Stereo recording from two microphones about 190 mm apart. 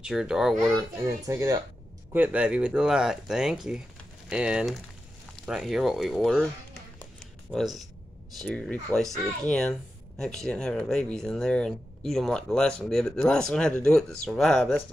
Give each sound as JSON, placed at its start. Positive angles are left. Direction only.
{"t": 0.0, "sound": "speech", "side_deg": -5}
{"t": 1.0, "sound": "speech", "side_deg": -15}
{"t": 5.3, "sound": "music", "side_deg": 0}
{"t": 8.4, "sound": "speech", "side_deg": 5}